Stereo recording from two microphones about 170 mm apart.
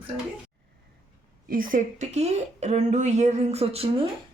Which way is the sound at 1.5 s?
55° right (ahead or behind).